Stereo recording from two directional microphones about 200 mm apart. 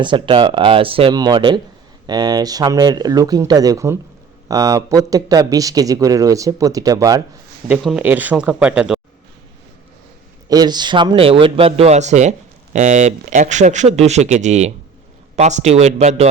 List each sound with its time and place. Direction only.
0.0 s speech: 25° right (ahead or behind)
7.7 s speech: 5° right (ahead or behind)
10.5 s speech: 20° right (ahead or behind)